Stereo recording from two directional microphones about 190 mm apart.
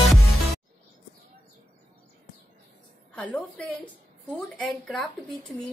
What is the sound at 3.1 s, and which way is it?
A woman's voice, 5° left (ahead or behind).